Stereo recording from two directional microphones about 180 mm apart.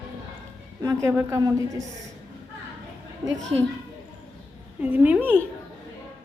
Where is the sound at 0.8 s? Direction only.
15° right (ahead or behind).